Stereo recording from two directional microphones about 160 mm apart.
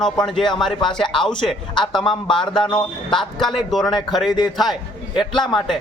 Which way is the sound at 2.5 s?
30° left (ahead or behind).